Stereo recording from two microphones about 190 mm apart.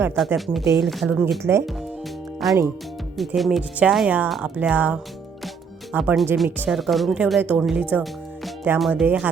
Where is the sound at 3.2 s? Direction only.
Centre (ahead or behind).